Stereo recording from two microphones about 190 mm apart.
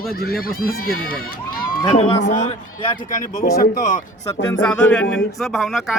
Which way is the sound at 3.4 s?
50° left (ahead or behind).